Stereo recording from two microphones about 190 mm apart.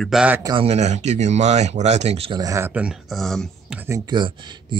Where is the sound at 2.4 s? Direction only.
15° right (ahead or behind); by 3.8 s centre (ahead or behind).